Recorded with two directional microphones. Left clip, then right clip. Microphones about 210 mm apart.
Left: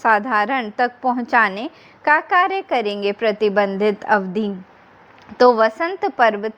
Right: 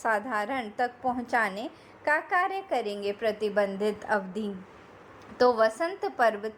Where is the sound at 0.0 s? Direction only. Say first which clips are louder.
Left 12 dB; 30° left (ahead or behind).